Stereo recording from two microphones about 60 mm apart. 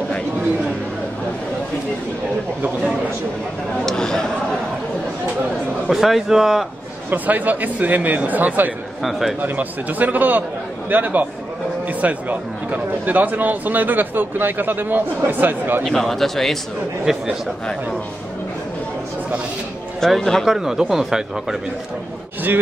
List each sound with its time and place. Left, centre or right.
3.8 s speech: centre
5.9 s speech: centre
7.1 s speech: right
15.8 s speech: centre
17.0 s speech: centre
20.0 s speech: centre
20.4 s speech: centre